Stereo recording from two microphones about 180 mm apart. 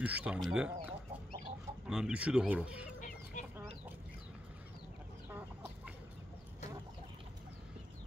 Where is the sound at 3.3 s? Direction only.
45° left (ahead or behind).